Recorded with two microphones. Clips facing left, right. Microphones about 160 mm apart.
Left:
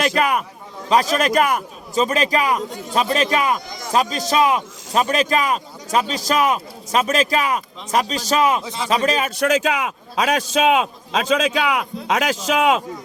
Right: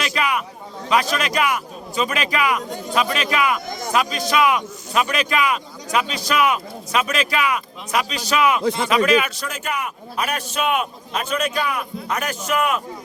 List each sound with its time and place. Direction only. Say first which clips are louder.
0.0 s a man's voice: left 4 dB; 45° left (ahead or behind)
9.3 s a man's voice: left 9 dB; 80° left